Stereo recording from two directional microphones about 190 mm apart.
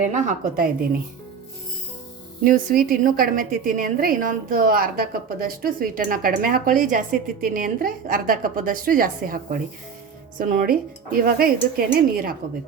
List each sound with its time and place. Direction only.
0.0 s a woman's voice: 40° right (ahead or behind)
2.4 s a woman's voice: 45° right (ahead or behind)